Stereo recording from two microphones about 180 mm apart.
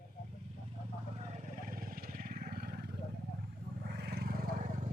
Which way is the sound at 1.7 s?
50° right (ahead or behind).